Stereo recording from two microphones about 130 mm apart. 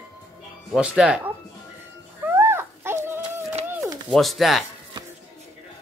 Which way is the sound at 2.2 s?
20° right (ahead or behind).